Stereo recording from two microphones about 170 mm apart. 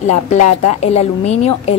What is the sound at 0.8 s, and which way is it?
Speech, 40° left (ahead or behind).